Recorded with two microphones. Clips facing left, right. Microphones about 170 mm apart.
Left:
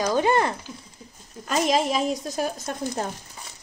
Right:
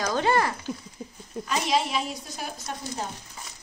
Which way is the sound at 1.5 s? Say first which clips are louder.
Left 4 dB; 45° left (ahead or behind).